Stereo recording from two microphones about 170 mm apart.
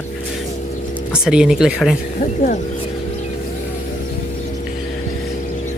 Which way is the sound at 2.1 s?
50° left (ahead or behind).